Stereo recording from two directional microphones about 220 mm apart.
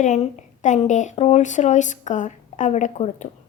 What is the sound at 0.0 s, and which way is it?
A woman's voice, 30° left (ahead or behind).